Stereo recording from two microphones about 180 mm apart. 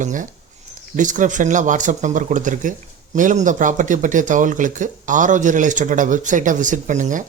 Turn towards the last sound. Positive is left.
turn(degrees=-45)  # may be behind; listen again after turning